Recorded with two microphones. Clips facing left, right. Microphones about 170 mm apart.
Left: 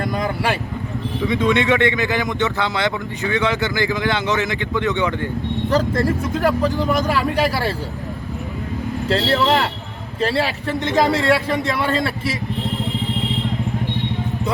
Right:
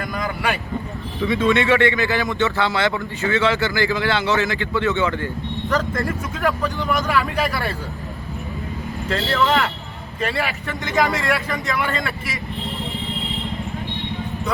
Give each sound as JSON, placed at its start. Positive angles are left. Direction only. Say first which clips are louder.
{"t": 0.0, "sound": "vehicle", "louder": "left 3 dB", "side_deg": 25}
{"t": 1.3, "sound": "speech", "louder": "even", "side_deg": 20}
{"t": 5.6, "sound": "a man's voice", "louder": "left 4 dB", "side_deg": 30}
{"t": 9.0, "sound": "a man's voice", "louder": "left 2 dB", "side_deg": 35}